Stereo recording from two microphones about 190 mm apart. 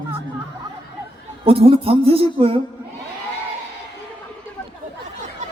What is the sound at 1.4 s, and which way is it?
A man's voice, 30° right (ahead or behind).